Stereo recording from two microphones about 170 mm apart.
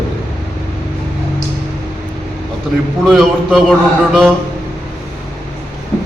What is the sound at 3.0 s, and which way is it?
A man's voice, centre (ahead or behind).